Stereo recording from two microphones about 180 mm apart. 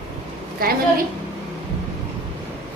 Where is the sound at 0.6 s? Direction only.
55° right (ahead or behind).